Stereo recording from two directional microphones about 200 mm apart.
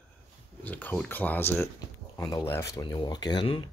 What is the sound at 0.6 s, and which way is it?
Speech, 10° left (ahead or behind).